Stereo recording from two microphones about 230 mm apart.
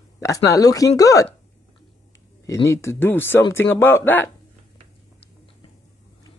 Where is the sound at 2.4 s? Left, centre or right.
Centre.